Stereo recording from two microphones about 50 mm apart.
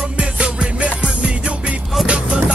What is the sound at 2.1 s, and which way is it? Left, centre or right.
Music, right.